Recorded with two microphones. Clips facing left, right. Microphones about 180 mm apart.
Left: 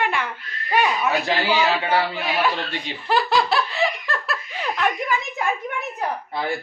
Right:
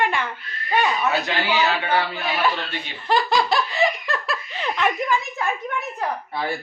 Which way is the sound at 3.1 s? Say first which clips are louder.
Even; 5° left (ahead or behind).